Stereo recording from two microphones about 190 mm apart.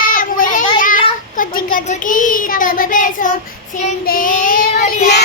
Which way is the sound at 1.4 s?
45° left (ahead or behind).